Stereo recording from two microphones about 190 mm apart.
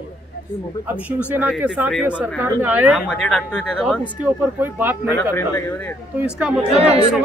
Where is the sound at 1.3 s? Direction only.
5° right (ahead or behind).